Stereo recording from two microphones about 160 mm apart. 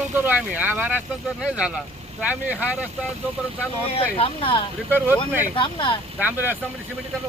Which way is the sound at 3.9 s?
35° left (ahead or behind).